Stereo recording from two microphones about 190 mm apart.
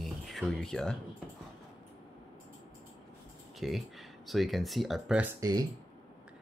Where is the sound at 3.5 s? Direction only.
Centre (ahead or behind).